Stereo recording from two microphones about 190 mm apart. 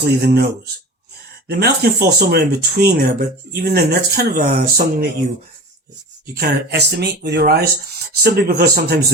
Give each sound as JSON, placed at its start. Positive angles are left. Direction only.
{"t": 0.0, "sound": "speech", "side_deg": -60}
{"t": 1.5, "sound": "speech", "side_deg": -55}
{"t": 6.3, "sound": "speech", "side_deg": -60}